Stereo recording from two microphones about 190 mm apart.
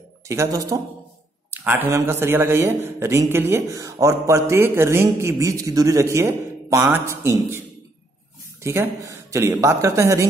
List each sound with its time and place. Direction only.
0.3 s speech: 15° right (ahead or behind)
8.6 s speech: 15° right (ahead or behind)